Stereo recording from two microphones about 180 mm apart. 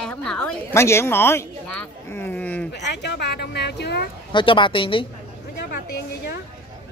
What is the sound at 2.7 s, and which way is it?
Speech, 70° left (ahead or behind).